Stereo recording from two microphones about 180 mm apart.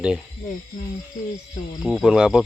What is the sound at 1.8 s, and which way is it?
Speech, centre (ahead or behind).